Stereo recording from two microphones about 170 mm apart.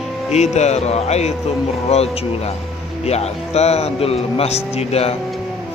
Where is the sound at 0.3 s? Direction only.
40° left (ahead or behind).